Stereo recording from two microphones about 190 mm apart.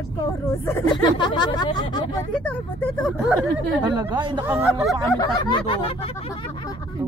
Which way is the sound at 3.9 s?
25° right (ahead or behind).